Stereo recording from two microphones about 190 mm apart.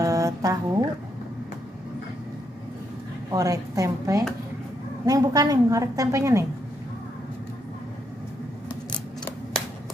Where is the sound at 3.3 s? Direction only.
15° right (ahead or behind).